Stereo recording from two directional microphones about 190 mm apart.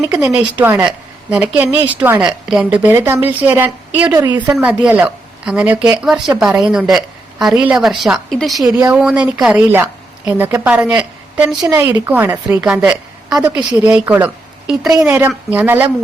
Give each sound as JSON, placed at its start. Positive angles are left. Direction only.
{"t": 0.1, "sound": "a woman's voice", "side_deg": -5}
{"t": 4.5, "sound": "a woman's voice", "side_deg": -5}
{"t": 6.3, "sound": "a woman's voice", "side_deg": -10}
{"t": 6.6, "sound": "a woman's voice", "side_deg": 0}